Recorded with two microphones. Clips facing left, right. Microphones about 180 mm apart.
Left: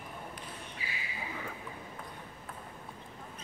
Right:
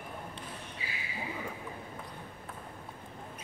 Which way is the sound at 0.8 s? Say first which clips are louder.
Even; 25° right (ahead or behind).